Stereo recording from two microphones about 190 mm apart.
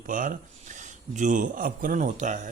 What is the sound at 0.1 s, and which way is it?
A man's voice, 45° right (ahead or behind).